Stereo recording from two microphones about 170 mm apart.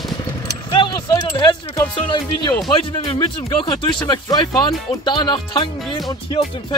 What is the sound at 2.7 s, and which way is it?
Speech, 30° left (ahead or behind).